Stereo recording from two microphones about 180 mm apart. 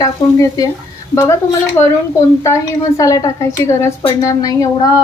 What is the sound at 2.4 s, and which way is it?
A woman's voice, 15° left (ahead or behind).